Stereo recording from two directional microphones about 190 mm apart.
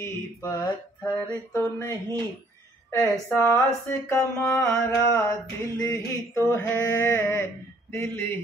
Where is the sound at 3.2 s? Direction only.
15° left (ahead or behind).